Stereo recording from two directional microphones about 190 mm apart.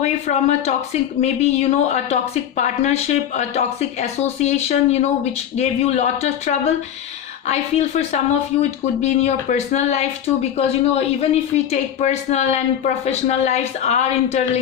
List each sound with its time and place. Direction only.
0.0 s speech: 40° left (ahead or behind)